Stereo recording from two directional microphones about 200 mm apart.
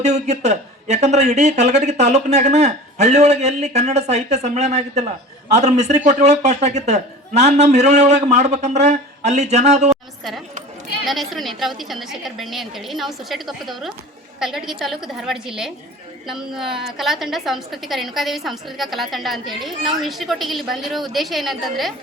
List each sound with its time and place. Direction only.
0.0 s speech: 35° right (ahead or behind)
9.9 s a sound: centre (ahead or behind)
11.0 s a woman's voice: centre (ahead or behind)